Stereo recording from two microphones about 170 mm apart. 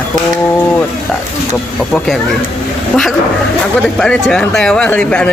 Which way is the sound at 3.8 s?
5° left (ahead or behind).